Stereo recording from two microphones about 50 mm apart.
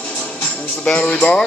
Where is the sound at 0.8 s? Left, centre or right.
Left.